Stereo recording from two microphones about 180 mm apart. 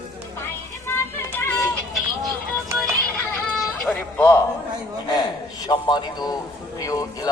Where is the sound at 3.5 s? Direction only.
5° left (ahead or behind).